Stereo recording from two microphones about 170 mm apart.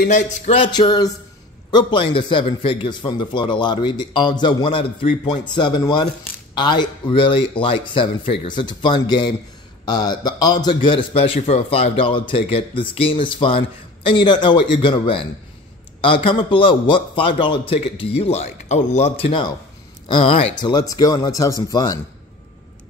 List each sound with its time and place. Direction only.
0.6 s a man's voice: 25° left (ahead or behind)